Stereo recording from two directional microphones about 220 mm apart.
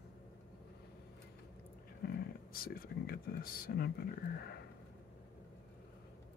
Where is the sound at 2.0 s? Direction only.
40° left (ahead or behind).